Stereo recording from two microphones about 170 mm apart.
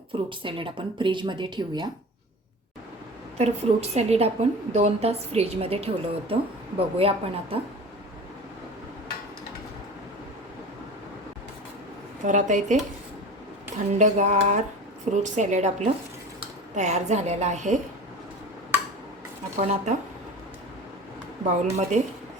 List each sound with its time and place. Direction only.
0.1 s speech: 30° right (ahead or behind)
3.3 s a woman's voice: 40° right (ahead or behind)
12.2 s a woman's voice: 45° right (ahead or behind)
19.5 s a woman's voice: 45° right (ahead or behind)
21.4 s a woman's voice: 45° right (ahead or behind)